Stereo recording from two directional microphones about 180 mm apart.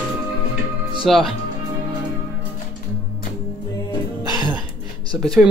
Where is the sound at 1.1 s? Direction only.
Centre (ahead or behind).